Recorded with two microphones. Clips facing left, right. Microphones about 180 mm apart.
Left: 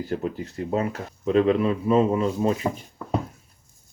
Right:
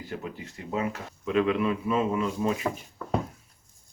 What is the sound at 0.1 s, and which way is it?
Speech, 40° left (ahead or behind).